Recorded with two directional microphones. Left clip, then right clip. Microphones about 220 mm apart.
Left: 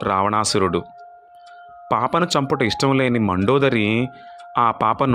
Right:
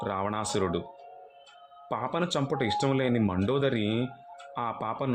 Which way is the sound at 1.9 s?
30° left (ahead or behind).